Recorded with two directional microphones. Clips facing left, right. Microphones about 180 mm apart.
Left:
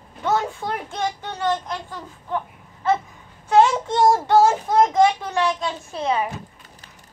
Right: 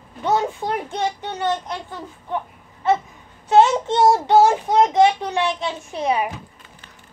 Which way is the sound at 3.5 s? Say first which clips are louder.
Right 1 dB; 20° right (ahead or behind).